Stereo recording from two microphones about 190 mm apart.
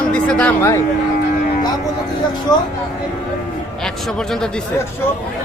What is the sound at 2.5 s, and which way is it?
Speech, 20° left (ahead or behind).